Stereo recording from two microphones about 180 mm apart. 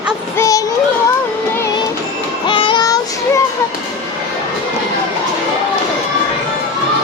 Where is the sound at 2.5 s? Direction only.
25° left (ahead or behind).